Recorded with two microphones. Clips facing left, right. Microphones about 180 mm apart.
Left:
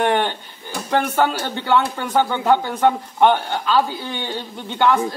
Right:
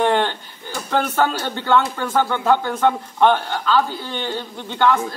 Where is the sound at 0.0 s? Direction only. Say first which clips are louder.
Right 1 dB; 15° left (ahead or behind).